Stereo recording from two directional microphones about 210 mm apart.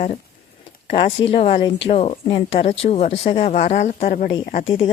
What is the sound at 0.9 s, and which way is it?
Speech, 30° left (ahead or behind).